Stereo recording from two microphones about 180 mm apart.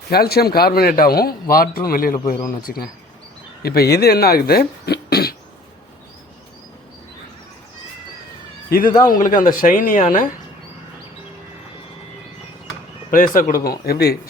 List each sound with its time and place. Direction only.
0.1 s speech: 60° left (ahead or behind)
9.2 s speech: 50° left (ahead or behind)
13.1 s speech: 50° left (ahead or behind)